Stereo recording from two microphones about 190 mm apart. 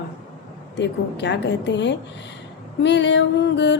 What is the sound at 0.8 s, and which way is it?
A woman's voice, 65° left (ahead or behind).